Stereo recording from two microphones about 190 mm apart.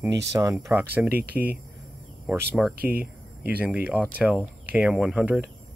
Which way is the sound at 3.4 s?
5° right (ahead or behind).